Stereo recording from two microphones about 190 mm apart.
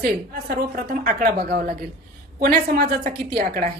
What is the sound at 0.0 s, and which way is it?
A woman's voice, 55° right (ahead or behind).